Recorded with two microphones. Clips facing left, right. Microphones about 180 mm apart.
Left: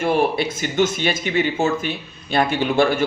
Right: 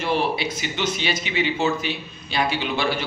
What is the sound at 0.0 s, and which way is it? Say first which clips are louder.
Speech: left 4 dB; 50° left (ahead or behind).